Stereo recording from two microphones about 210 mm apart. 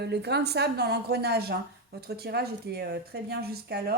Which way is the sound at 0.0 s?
50° right (ahead or behind).